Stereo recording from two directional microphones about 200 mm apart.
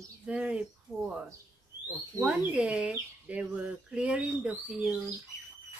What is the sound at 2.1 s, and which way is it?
Speech, 5° right (ahead or behind).